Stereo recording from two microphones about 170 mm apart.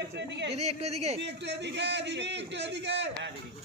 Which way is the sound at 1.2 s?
90° right.